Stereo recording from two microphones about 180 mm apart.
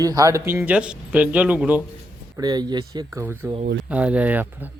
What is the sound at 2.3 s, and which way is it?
Speech, 25° right (ahead or behind).